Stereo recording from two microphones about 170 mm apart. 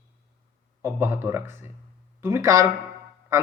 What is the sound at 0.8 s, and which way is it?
Speech, 15° right (ahead or behind).